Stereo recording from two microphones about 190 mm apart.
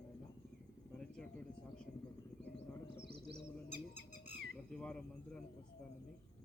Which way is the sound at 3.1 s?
55° right (ahead or behind).